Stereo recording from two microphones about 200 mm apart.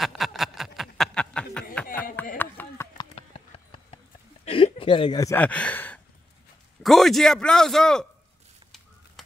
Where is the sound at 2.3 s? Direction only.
10° left (ahead or behind).